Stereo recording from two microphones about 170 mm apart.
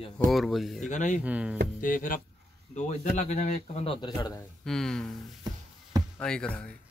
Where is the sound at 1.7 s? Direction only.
55° left (ahead or behind); by 4.3 s 30° left (ahead or behind).